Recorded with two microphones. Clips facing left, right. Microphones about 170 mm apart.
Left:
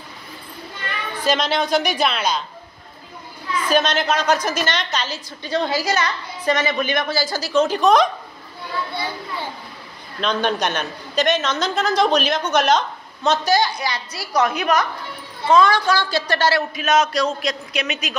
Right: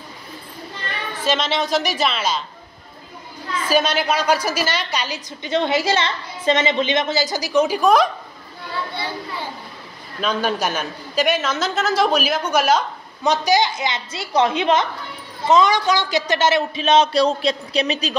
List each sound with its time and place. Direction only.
1.2 s a woman's voice: centre (ahead or behind)
3.6 s a woman's voice: 10° right (ahead or behind)
10.2 s a woman's voice: 5° right (ahead or behind); by 18.1 s 30° right (ahead or behind)